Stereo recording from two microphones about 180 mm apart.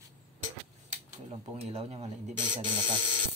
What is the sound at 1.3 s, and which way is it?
Speech, 35° right (ahead or behind).